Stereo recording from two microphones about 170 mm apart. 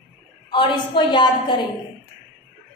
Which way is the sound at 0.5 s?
30° left (ahead or behind).